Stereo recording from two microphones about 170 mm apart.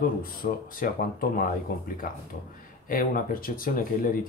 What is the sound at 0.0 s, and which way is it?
Speech, 55° left (ahead or behind).